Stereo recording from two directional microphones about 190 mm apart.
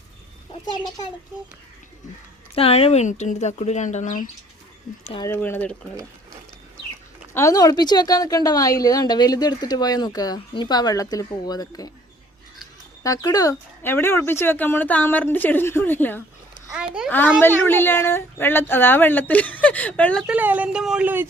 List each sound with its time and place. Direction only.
0.6 s a woman's voice: 25° left (ahead or behind)
2.6 s speech: 30° left (ahead or behind)
5.1 s a woman's voice: 20° left (ahead or behind)
7.3 s a woman's voice: 15° left (ahead or behind)
13.0 s speech: 15° left (ahead or behind)
16.7 s a child's voice: 5° right (ahead or behind)
17.1 s speech: 10° left (ahead or behind)
20.2 s a woman's voice: 10° right (ahead or behind)